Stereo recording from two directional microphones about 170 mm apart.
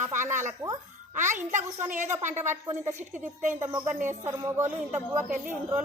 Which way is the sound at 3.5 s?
15° right (ahead or behind).